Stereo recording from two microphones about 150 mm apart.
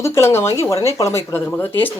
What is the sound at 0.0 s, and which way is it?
Speech, 15° left (ahead or behind).